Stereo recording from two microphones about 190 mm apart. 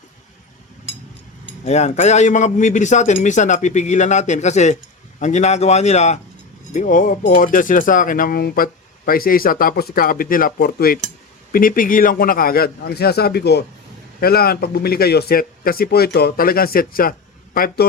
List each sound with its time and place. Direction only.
1.6 s a man's voice: 35° left (ahead or behind)